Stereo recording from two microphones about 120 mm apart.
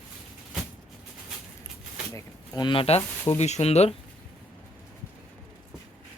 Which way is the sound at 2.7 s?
50° left (ahead or behind).